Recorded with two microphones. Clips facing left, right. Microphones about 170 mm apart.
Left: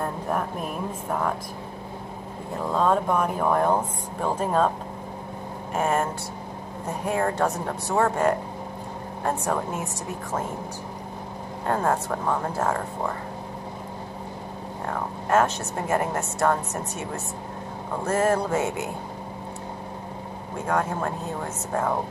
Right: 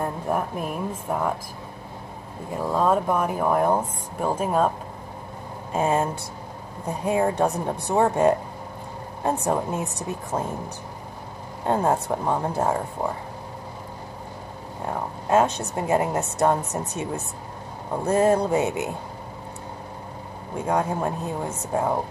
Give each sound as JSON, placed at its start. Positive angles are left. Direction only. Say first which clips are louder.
{"t": 0.3, "sound": "a sound", "louder": "right 2 dB", "side_deg": -5}
{"t": 2.6, "sound": "a woman's voice", "louder": "right 1 dB", "side_deg": -10}
{"t": 5.7, "sound": "a woman's voice", "louder": "right 2 dB", "side_deg": -15}
{"t": 7.1, "sound": "a woman's voice", "louder": "right 3 dB", "side_deg": -15}
{"t": 11.6, "sound": "a woman's voice", "louder": "right 2 dB", "side_deg": -20}
{"t": 14.9, "sound": "a woman's voice", "louder": "right 2 dB", "side_deg": -15}
{"t": 20.6, "sound": "a woman's voice", "louder": "right 2 dB", "side_deg": -15}